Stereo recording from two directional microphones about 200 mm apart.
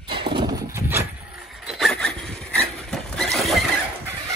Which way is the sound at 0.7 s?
10° right (ahead or behind).